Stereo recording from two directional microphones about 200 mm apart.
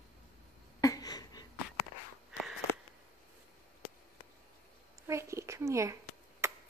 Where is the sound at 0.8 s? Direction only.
20° left (ahead or behind).